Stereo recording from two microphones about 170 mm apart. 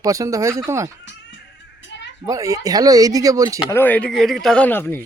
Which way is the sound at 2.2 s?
20° right (ahead or behind).